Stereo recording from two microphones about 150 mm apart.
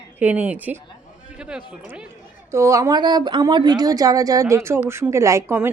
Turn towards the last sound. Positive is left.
turn(degrees=-20)  # may be behind; listen again after turning